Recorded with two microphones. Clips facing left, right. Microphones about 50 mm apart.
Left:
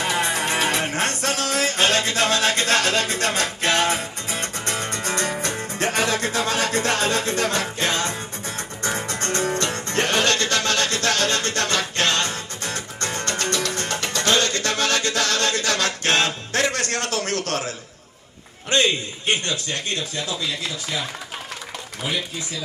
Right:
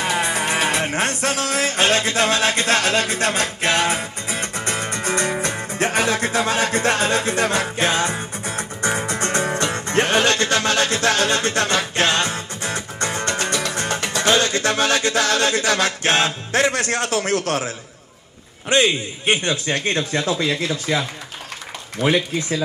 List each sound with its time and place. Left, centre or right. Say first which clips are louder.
0.0 s music: right 2 dB; centre
18.7 s a man's voice: right 3 dB; centre; by 20.7 s right
22.0 s a man's voice: right 9 dB; right